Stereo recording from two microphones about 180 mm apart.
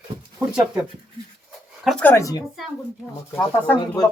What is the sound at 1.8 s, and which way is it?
Speech, 5° left (ahead or behind).